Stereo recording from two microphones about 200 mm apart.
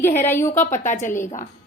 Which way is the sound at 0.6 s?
40° left (ahead or behind).